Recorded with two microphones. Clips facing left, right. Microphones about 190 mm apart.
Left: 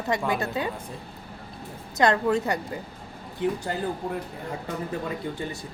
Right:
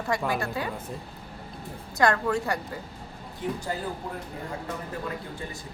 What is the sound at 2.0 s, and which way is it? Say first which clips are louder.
Speech: left 2 dB; 20° left (ahead or behind).